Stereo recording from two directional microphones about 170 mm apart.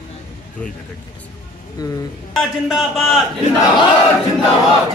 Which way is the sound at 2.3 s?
Centre (ahead or behind).